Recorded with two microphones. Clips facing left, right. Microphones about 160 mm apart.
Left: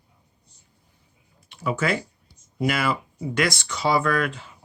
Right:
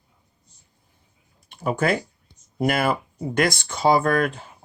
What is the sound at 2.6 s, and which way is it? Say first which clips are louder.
Speech: right 2 dB; 50° right (ahead or behind).